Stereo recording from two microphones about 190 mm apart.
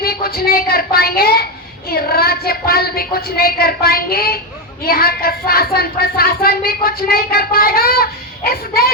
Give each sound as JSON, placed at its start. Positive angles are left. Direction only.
{"t": 0.0, "sound": "speech", "side_deg": 55}